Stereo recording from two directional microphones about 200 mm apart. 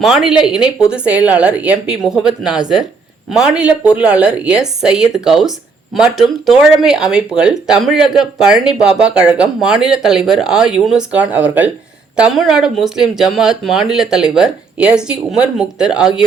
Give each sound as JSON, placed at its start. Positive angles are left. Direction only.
{"t": 0.0, "sound": "a woman's voice", "side_deg": 0}